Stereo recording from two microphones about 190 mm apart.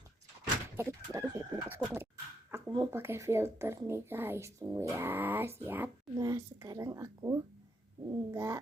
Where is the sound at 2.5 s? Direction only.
15° right (ahead or behind).